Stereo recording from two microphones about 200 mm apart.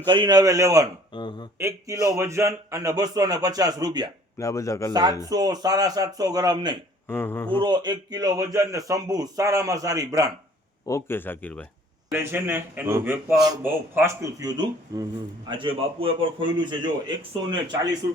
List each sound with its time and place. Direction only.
0.0 s a man's voice: 25° right (ahead or behind)
1.1 s speech: 20° left (ahead or behind)
1.5 s a man's voice: 15° right (ahead or behind)
4.4 s speech: 15° left (ahead or behind)
5.3 s a man's voice: 20° right (ahead or behind)
7.1 s speech: 10° left (ahead or behind)
7.6 s speech: 20° right (ahead or behind)
10.8 s speech: 15° left (ahead or behind)
12.1 s a man's voice: 10° right (ahead or behind)